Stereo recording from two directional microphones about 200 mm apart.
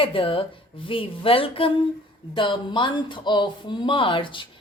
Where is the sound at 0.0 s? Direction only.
25° left (ahead or behind).